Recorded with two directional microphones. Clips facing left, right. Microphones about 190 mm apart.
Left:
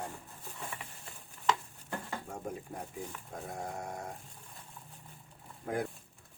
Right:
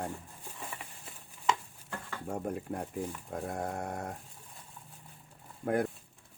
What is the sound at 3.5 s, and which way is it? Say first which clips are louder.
Sheep: right 3 dB; 60° right (ahead or behind).